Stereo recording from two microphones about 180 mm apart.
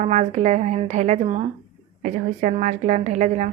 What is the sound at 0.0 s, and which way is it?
A woman's voice, 40° right (ahead or behind).